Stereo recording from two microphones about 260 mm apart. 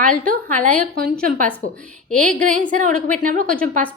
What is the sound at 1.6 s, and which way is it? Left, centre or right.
Speech, left.